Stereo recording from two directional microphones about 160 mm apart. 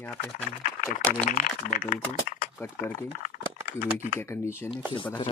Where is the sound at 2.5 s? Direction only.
15° left (ahead or behind).